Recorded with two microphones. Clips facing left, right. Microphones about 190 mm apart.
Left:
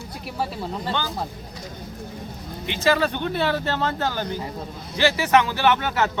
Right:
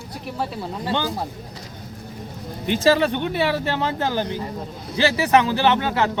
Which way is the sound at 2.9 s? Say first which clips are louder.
Right 2 dB; 20° right (ahead or behind).